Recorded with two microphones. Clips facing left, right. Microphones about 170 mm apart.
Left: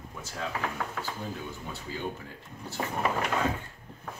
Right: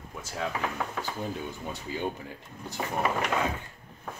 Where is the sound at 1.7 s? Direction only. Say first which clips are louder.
Right 3 dB; 15° right (ahead or behind).